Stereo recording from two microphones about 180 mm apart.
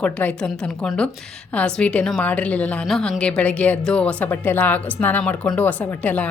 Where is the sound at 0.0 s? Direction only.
10° left (ahead or behind).